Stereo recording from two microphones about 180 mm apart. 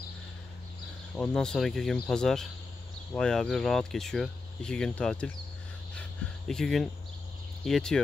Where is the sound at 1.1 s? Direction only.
5° left (ahead or behind).